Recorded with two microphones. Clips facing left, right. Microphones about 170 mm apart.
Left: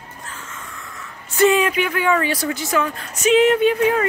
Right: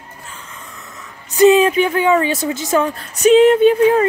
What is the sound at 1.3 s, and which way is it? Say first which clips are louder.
Speech: right 6 dB; 20° right (ahead or behind).